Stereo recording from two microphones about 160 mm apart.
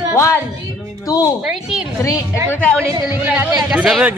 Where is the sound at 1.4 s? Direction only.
5° right (ahead or behind).